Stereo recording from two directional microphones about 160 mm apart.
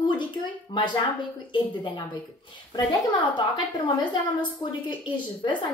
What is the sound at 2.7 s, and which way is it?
A woman's voice, 25° left (ahead or behind).